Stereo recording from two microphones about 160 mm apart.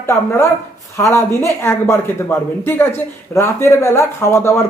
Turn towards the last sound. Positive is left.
turn(degrees=15)  # may be behind; listen again after turning